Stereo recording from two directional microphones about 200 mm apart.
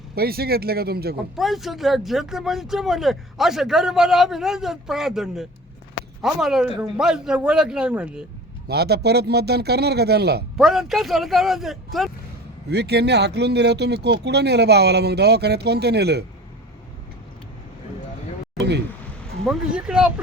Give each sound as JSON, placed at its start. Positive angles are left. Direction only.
{"t": 0.2, "sound": "speech", "side_deg": -50}
{"t": 1.4, "sound": "speech", "side_deg": 0}
{"t": 8.6, "sound": "speech", "side_deg": -55}
{"t": 10.6, "sound": "speech", "side_deg": 0}
{"t": 12.7, "sound": "speech", "side_deg": -55}
{"t": 19.5, "sound": "speech", "side_deg": -5}